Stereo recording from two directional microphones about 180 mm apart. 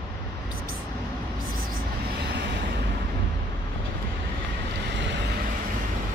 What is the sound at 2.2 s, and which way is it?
Vehicle, 70° right (ahead or behind).